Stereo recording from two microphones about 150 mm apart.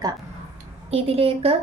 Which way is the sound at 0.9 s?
40° right (ahead or behind).